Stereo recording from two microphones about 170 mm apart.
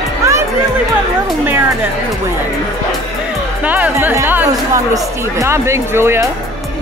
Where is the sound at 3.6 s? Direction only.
10° right (ahead or behind).